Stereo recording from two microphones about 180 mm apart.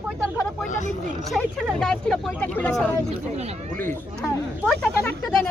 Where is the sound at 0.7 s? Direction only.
45° left (ahead or behind).